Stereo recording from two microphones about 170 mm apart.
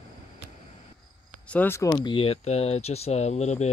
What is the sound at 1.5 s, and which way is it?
Speech, 10° left (ahead or behind).